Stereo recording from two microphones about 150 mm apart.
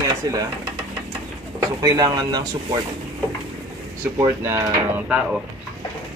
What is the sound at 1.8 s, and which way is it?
Speech, 25° right (ahead or behind).